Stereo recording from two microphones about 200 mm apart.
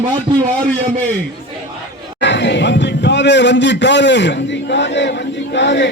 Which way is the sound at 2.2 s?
60° left (ahead or behind).